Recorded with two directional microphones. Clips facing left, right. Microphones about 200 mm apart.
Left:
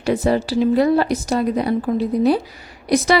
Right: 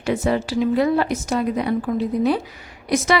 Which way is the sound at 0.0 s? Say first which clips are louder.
Left 3 dB; 35° left (ahead or behind).